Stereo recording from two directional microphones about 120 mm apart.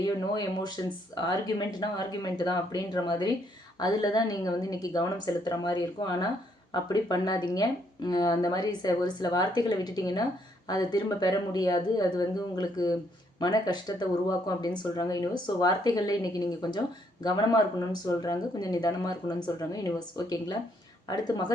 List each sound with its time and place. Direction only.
0.0 s speech: 35° left (ahead or behind)